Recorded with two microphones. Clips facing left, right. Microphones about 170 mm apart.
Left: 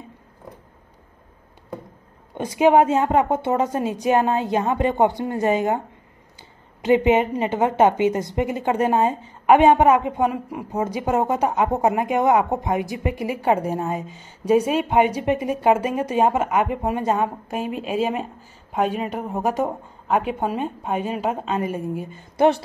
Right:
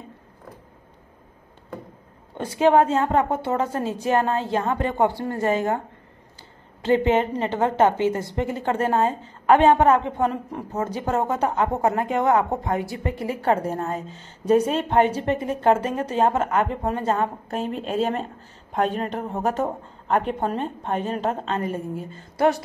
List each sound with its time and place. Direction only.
2.3 s a woman's voice: 15° left (ahead or behind)
6.8 s a woman's voice: 15° left (ahead or behind)